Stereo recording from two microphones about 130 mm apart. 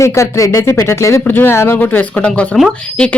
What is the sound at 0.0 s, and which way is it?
Speech, 20° left (ahead or behind).